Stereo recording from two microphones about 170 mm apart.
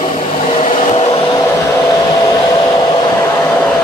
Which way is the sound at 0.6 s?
40° left (ahead or behind).